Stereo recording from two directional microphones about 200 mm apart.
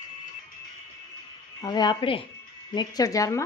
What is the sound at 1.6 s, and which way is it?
Speech, 20° left (ahead or behind).